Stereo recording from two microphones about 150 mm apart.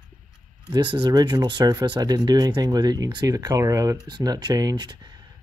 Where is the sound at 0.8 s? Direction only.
35° right (ahead or behind).